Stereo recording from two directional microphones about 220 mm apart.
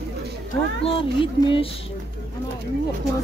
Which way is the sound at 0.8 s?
25° left (ahead or behind).